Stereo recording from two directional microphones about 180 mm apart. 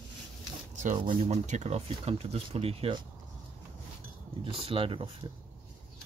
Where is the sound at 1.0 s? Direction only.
40° right (ahead or behind).